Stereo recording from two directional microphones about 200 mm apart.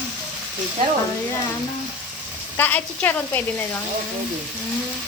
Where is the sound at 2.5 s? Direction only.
10° left (ahead or behind).